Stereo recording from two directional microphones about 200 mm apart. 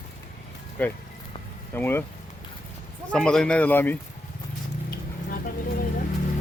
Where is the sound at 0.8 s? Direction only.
10° left (ahead or behind).